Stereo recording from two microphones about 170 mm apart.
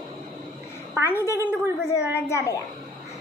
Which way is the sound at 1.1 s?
15° left (ahead or behind).